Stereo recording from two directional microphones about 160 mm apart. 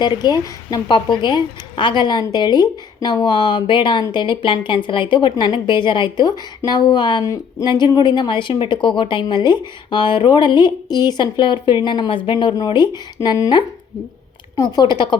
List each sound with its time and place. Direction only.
0.0 s a woman's voice: 25° left (ahead or behind)